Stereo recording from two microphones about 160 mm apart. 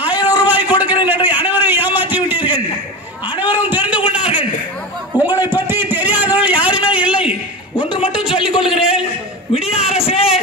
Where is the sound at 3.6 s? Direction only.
10° right (ahead or behind).